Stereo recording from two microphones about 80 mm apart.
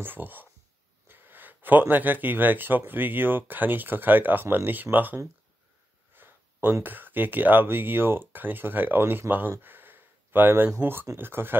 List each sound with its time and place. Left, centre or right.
0.0 s speech: right
9.3 s a sound: right
10.8 s speech: right